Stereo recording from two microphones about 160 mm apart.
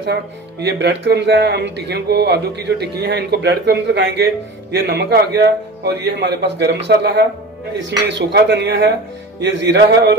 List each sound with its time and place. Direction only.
0.0 s speech: 90° right